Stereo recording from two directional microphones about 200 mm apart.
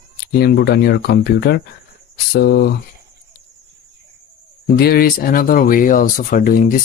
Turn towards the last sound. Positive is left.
turn(degrees=45)  # may be behind; listen again after turning